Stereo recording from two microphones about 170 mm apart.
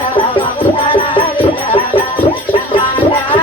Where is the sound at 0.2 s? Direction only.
30° left (ahead or behind).